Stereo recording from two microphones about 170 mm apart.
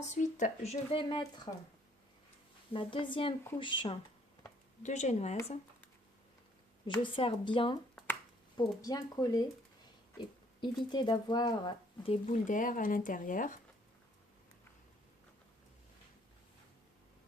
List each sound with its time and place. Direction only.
0.1 s speech: 45° left (ahead or behind); by 1.5 s 25° left (ahead or behind)
2.7 s speech: 30° left (ahead or behind)
4.8 s speech: 45° left (ahead or behind)
6.8 s speech: 30° left (ahead or behind)
10.6 s speech: 25° left (ahead or behind)
12.3 s speech: 50° left (ahead or behind)